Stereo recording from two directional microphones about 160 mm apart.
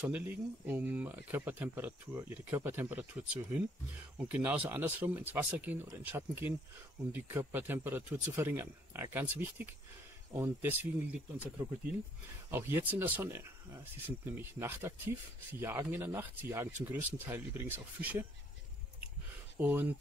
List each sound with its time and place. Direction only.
0.0 s speech: 10° right (ahead or behind)
19.5 s speech: 10° right (ahead or behind)